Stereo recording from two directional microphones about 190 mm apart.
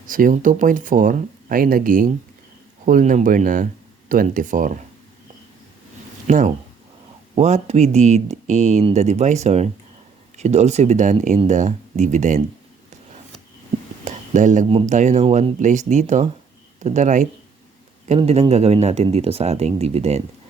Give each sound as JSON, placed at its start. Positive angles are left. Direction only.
{"t": 0.0, "sound": "speech", "side_deg": -45}
{"t": 6.2, "sound": "speech", "side_deg": -40}
{"t": 14.0, "sound": "a sound", "side_deg": -40}
{"t": 14.8, "sound": "speech", "side_deg": -40}